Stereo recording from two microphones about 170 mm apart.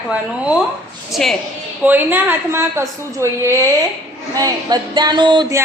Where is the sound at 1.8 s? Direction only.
10° right (ahead or behind).